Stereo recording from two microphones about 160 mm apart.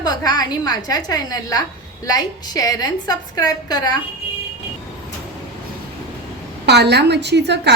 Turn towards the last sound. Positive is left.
turn(degrees=-90)